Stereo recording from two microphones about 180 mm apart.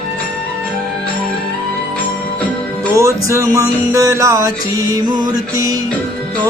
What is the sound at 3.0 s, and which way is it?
Music, 15° right (ahead or behind).